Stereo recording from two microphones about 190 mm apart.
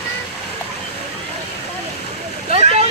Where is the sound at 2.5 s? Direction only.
35° right (ahead or behind).